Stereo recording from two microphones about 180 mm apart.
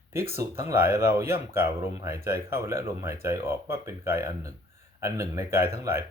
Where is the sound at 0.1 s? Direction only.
15° right (ahead or behind).